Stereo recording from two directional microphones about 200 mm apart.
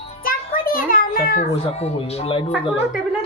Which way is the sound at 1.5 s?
30° left (ahead or behind).